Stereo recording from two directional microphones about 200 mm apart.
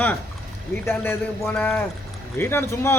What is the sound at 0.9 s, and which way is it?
A man's voice, 5° left (ahead or behind).